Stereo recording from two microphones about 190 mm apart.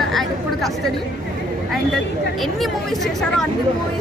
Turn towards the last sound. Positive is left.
turn(degrees=0)  # may be behind; listen again after turning